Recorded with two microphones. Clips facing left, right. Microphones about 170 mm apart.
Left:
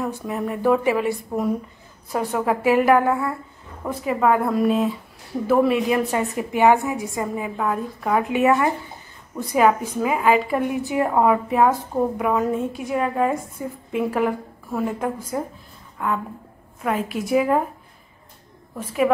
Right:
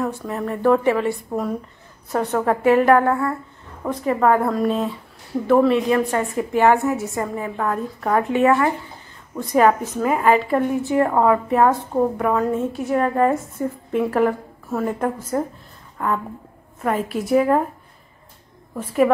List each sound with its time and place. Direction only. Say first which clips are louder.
0.1 s a woman's voice: even; 15° left (ahead or behind)
2.1 s a woman's voice: right 2 dB; 5° left (ahead or behind)
9.5 s a woman's voice: right 2 dB; 5° left (ahead or behind)
18.8 s a woman's voice: right 3 dB; centre (ahead or behind)